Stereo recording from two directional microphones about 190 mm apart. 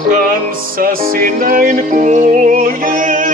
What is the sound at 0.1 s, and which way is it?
Music, 50° right (ahead or behind).